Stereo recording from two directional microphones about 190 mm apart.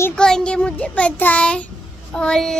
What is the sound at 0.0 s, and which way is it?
Child singing, 5° left (ahead or behind).